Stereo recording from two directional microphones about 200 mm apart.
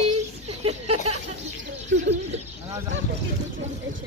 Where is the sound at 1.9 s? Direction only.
60° right (ahead or behind).